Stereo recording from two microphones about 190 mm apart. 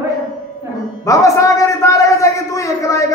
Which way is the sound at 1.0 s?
15° left (ahead or behind).